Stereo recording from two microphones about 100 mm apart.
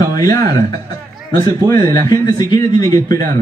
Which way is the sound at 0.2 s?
35° left (ahead or behind).